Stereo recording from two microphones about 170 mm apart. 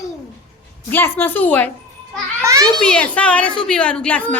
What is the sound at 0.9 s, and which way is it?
Speech, 10° left (ahead or behind).